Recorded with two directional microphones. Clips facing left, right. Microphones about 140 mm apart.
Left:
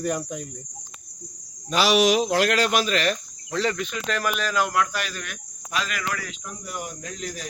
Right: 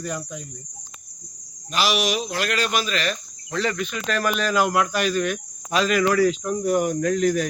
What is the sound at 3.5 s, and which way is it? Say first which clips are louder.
Speech: even; 30° left (ahead or behind).